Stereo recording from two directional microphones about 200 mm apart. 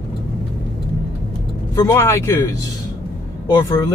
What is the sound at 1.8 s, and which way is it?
Speech, 15° left (ahead or behind).